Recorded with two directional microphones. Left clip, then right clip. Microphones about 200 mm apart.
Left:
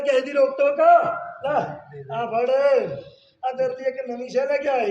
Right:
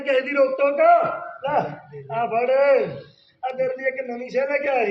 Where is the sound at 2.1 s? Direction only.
10° left (ahead or behind).